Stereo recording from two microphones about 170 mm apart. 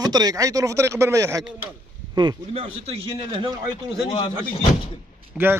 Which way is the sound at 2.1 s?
30° right (ahead or behind).